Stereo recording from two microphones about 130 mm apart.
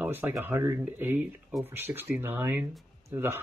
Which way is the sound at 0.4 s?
20° right (ahead or behind).